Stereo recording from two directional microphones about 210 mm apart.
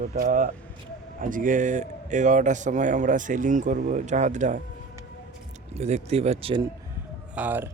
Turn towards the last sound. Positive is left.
turn(degrees=-10)  # may be behind; listen again after turning